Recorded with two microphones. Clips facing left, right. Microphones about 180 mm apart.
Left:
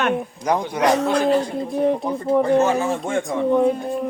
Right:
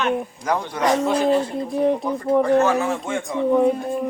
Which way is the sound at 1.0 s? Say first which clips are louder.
Even; centre (ahead or behind).